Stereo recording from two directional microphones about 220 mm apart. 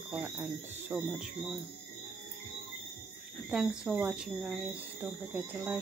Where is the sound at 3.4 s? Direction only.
Centre (ahead or behind).